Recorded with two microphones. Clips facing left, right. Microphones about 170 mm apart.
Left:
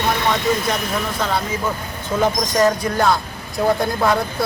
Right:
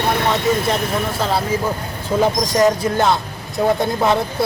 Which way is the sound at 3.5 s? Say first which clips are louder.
Right 1 dB; centre (ahead or behind).